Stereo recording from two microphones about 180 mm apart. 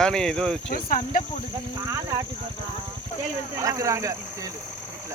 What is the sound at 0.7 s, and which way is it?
Speech, 50° left (ahead or behind).